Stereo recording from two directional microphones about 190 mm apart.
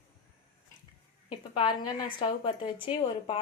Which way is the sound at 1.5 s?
25° left (ahead or behind).